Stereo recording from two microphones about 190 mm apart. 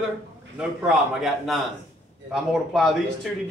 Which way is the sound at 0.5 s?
Centre (ahead or behind).